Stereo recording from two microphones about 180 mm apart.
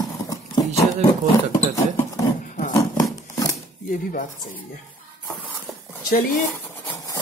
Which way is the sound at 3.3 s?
20° left (ahead or behind).